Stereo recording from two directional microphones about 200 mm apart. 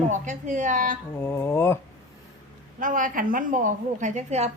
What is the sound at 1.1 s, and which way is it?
Speech, 10° left (ahead or behind).